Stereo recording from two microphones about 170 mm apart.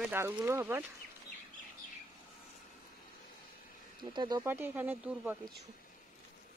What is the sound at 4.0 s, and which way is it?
Speech, 25° right (ahead or behind).